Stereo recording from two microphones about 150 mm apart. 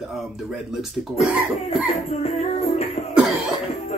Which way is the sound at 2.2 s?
45° left (ahead or behind).